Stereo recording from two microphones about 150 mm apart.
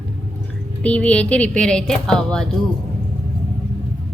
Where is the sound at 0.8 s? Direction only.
10° left (ahead or behind).